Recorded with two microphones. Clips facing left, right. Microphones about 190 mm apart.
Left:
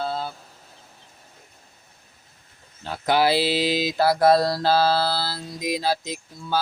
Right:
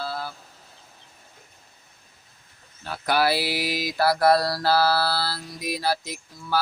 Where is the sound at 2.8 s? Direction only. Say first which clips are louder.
Left 2 dB; 20° left (ahead or behind).